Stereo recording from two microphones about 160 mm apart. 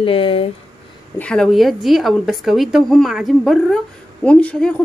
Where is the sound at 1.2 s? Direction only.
5° left (ahead or behind).